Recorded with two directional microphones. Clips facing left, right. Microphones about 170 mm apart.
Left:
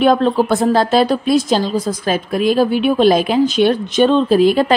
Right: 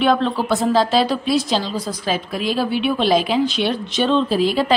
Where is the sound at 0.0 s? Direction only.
45° left (ahead or behind).